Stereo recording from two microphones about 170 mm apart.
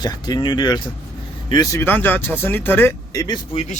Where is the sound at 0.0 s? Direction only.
25° left (ahead or behind).